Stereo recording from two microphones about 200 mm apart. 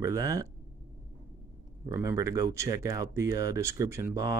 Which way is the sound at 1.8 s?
15° right (ahead or behind).